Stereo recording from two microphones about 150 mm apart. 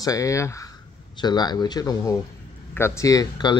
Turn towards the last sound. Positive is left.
turn(degrees=25)  # may be behind; listen again after turning